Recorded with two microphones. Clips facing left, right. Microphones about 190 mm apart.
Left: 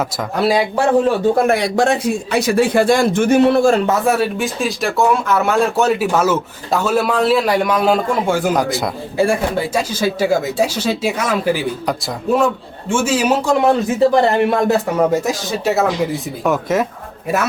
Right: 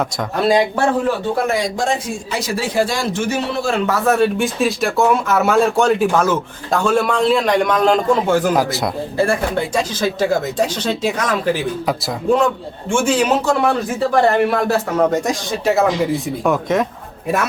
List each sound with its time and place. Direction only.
0.3 s speech: 5° left (ahead or behind)
1.5 s speech: 65° left (ahead or behind)
4.0 s speech: 5° left (ahead or behind)
9.1 s speech: 10° left (ahead or behind)
13.5 s speech: 20° left (ahead or behind)
14.8 s speech: 10° left (ahead or behind)